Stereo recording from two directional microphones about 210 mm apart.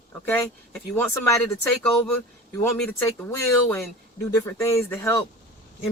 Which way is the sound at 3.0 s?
15° left (ahead or behind).